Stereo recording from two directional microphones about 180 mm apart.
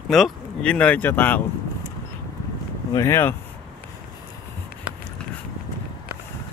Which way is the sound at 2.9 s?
15° left (ahead or behind).